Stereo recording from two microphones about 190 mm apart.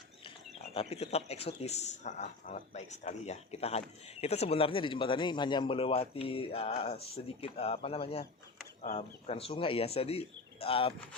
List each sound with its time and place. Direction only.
0.7 s a man's voice: 30° left (ahead or behind)